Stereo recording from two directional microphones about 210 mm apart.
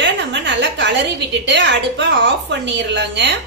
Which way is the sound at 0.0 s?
60° right (ahead or behind).